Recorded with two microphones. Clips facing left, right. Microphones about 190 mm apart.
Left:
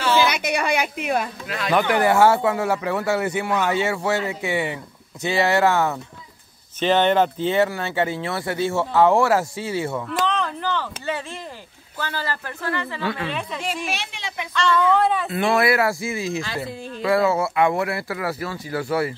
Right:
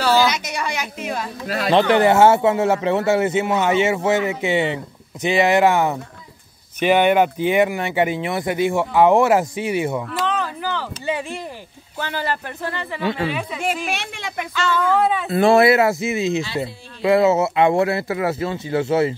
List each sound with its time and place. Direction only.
0.2 s a woman's voice: 60° left (ahead or behind)
1.5 s speech: 30° right (ahead or behind)
10.2 s a sound: 5° right (ahead or behind)
12.0 s speech: 20° right (ahead or behind)
13.3 s speech: 5° right (ahead or behind)
13.8 s a woman's voice: 55° right (ahead or behind)
14.5 s speech: 5° right (ahead or behind)
15.2 s speech: 35° right (ahead or behind)